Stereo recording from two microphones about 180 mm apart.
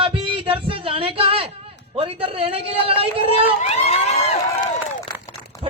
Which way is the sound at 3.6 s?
35° left (ahead or behind).